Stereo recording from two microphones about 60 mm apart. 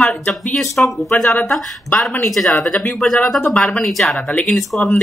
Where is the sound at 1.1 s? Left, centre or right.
Centre.